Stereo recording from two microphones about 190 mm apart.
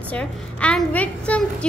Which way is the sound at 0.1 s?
5° left (ahead or behind).